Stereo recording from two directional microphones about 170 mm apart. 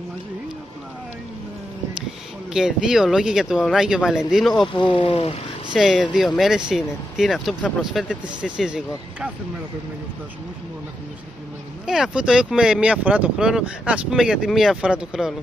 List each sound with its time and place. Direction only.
2.5 s speech: 5° right (ahead or behind)
4.7 s speech: 30° left (ahead or behind)
5.7 s speech: centre (ahead or behind)
11.8 s speech: 5° right (ahead or behind)